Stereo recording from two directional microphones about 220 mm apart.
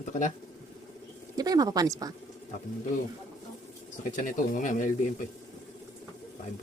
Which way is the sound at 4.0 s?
35° left (ahead or behind).